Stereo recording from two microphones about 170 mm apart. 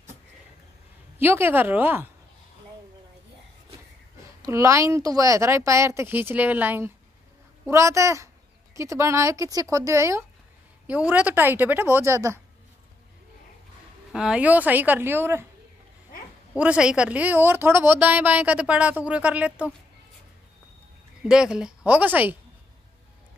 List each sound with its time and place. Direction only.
1.1 s a woman's voice: 15° right (ahead or behind)
4.4 s a woman's voice: 15° right (ahead or behind)
14.1 s a woman's voice: 5° right (ahead or behind)
16.5 s a woman's voice: 5° right (ahead or behind)
21.2 s a woman's voice: 5° right (ahead or behind)